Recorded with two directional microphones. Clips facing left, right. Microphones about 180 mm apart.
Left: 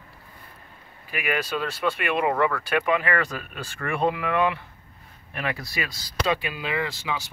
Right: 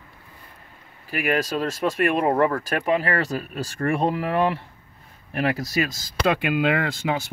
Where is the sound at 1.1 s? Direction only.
40° right (ahead or behind).